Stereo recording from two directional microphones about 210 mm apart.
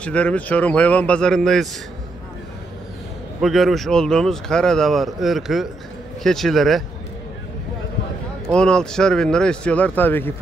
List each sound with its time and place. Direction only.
0.0 s speech: 5° left (ahead or behind)
3.3 s speech: centre (ahead or behind)
8.5 s speech: 5° left (ahead or behind)